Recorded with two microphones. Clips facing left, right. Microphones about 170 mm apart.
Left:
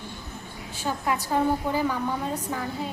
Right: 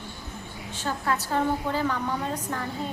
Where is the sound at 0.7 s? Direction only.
10° left (ahead or behind).